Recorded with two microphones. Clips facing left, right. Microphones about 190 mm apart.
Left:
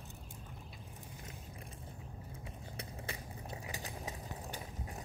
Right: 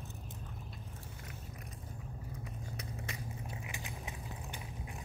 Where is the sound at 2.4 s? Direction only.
30° left (ahead or behind).